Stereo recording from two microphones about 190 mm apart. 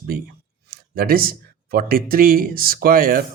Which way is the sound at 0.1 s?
50° right (ahead or behind).